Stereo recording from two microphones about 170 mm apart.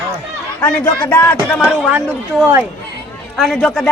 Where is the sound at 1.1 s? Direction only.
15° left (ahead or behind).